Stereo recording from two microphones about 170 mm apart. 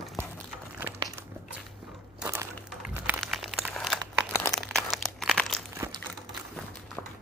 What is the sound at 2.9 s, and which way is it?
Crumpling, 5° right (ahead or behind).